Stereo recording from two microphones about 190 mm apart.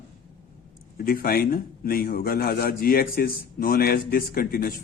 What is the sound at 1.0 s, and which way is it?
A man's voice, 50° left (ahead or behind).